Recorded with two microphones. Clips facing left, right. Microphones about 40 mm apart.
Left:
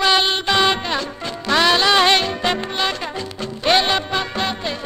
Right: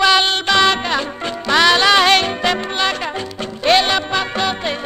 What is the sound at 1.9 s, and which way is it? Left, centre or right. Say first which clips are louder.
Music: right 2 dB; centre.